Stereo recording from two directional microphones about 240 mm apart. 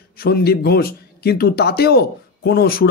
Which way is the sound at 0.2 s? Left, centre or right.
Left.